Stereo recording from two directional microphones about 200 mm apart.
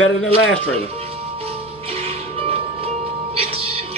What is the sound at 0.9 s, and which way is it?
Music, 30° right (ahead or behind).